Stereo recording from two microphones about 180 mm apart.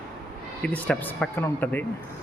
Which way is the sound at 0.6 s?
5° left (ahead or behind).